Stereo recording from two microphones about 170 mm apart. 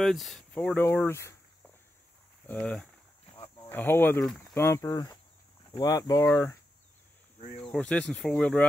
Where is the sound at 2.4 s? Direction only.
10° left (ahead or behind).